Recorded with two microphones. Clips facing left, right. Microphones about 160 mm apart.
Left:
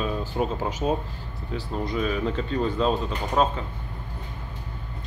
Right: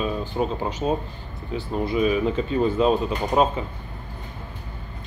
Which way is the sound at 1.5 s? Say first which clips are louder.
Right 4 dB; 5° right (ahead or behind).